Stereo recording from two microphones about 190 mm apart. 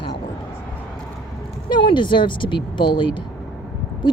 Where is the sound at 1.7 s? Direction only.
25° left (ahead or behind).